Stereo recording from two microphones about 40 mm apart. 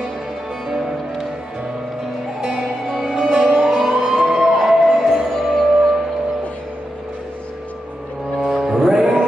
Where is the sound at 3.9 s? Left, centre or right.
Centre.